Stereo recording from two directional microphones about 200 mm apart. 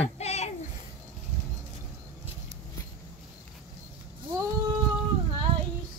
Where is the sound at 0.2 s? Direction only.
30° left (ahead or behind).